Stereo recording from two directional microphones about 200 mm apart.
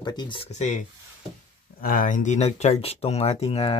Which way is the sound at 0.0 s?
20° left (ahead or behind).